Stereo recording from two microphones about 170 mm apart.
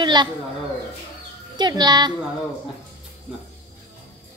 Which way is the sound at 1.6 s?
25° right (ahead or behind).